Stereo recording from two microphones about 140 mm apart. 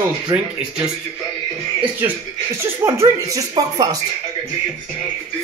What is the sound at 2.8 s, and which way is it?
A man's voice, 20° right (ahead or behind).